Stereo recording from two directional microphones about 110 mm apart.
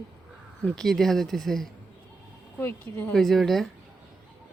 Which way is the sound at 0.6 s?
5° left (ahead or behind).